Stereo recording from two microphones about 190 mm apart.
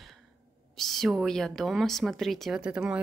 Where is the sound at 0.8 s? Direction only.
Centre (ahead or behind).